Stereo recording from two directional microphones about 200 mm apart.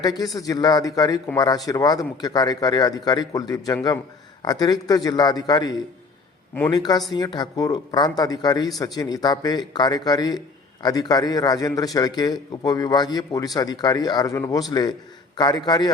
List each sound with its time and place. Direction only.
0.0 s a man's voice: 20° left (ahead or behind)